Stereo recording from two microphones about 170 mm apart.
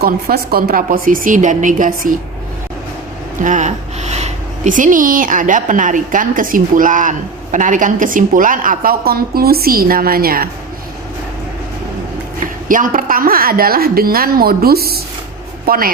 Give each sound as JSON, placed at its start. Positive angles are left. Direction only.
{"t": 0.0, "sound": "speech", "side_deg": -60}
{"t": 3.4, "sound": "speech", "side_deg": -45}
{"t": 12.6, "sound": "a woman's voice", "side_deg": -50}